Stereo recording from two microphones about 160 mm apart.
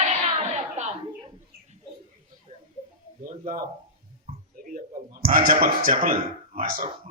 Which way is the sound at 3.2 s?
60° right (ahead or behind).